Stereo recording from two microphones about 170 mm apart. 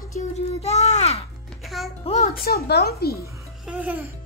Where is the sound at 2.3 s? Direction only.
65° left (ahead or behind).